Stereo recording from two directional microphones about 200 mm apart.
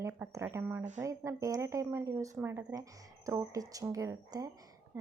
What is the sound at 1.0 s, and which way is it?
A woman's voice, 15° right (ahead or behind).